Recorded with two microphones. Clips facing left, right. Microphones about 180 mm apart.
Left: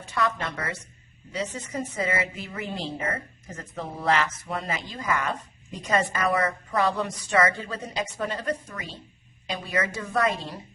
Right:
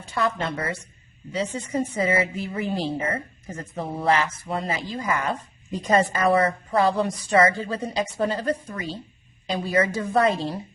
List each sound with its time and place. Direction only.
0.0 s a woman's voice: 30° right (ahead or behind)